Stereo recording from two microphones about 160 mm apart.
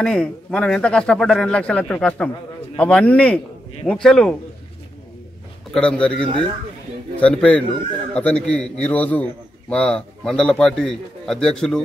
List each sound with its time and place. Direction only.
0.0 s a man's voice: 5° left (ahead or behind)
5.7 s a man's voice: 5° left (ahead or behind)
6.2 s speech: 30° right (ahead or behind)
7.2 s a man's voice: 5° left (ahead or behind)